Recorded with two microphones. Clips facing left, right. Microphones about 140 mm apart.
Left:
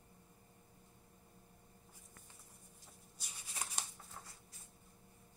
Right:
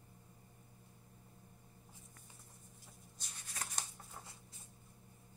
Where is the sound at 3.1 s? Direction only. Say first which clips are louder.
Even; 5° left (ahead or behind).